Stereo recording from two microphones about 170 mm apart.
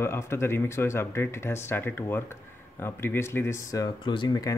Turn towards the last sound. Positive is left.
turn(degrees=25)  # may be behind; listen again after turning